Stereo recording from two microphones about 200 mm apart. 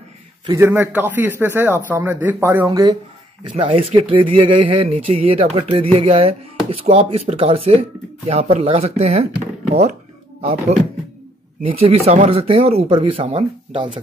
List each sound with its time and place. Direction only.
0.5 s a man's voice: 15° right (ahead or behind)
3.5 s speech: 30° right (ahead or behind)
11.7 s speech: 30° right (ahead or behind)